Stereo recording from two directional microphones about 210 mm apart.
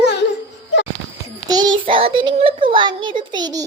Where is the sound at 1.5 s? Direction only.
20° right (ahead or behind).